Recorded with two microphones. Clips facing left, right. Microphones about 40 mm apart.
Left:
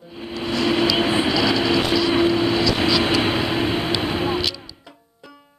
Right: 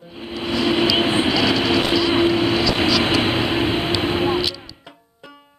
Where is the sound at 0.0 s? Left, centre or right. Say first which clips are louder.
Right 1 dB; centre.